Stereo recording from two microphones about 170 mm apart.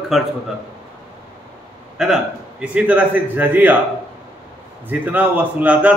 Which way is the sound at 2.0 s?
5° right (ahead or behind).